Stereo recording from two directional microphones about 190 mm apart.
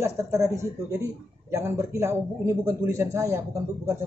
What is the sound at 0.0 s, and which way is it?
A man's voice, 15° right (ahead or behind).